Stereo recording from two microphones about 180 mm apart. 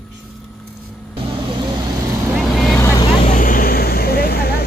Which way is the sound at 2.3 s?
Centre (ahead or behind).